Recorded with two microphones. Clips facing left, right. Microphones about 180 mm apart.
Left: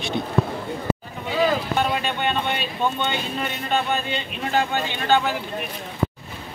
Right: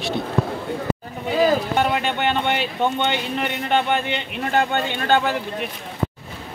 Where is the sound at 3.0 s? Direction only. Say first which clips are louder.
Right 3 dB; 70° right (ahead or behind).